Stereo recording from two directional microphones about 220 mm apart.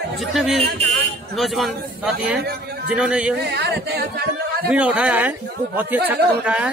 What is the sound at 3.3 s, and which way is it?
Speech, 50° right (ahead or behind).